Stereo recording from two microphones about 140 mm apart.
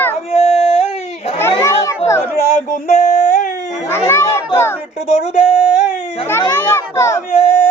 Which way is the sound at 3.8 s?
20° left (ahead or behind).